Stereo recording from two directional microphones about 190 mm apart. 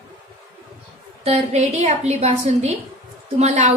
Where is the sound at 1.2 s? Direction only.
35° right (ahead or behind).